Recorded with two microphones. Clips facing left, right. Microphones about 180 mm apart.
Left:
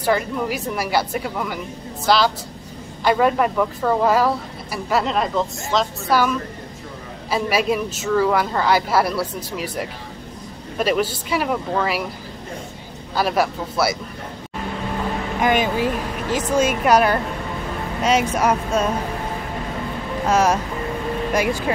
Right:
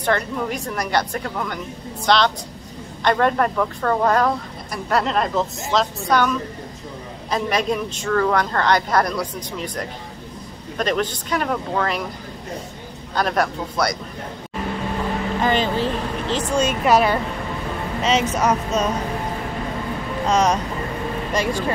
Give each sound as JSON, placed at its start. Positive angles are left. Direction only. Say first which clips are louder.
{"t": 0.0, "sound": "speech", "louder": "left 1 dB", "side_deg": 5}
{"t": 13.1, "sound": "speech", "louder": "left 1 dB", "side_deg": 5}
{"t": 15.4, "sound": "speech", "louder": "left 2 dB", "side_deg": 10}
{"t": 20.2, "sound": "speech", "louder": "left 1 dB", "side_deg": 5}